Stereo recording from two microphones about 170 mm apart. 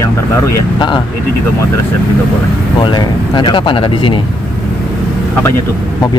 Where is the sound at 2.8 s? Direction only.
25° left (ahead or behind).